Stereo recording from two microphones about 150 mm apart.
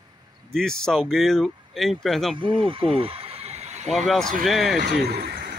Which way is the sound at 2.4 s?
35° right (ahead or behind).